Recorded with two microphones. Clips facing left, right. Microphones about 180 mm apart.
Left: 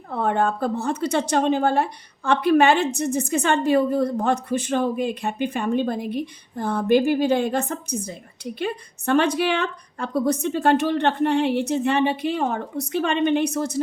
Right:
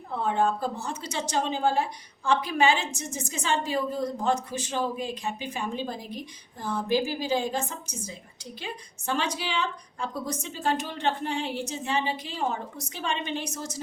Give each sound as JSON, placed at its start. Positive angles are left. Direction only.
{"t": 0.1, "sound": "a woman's voice", "side_deg": 60}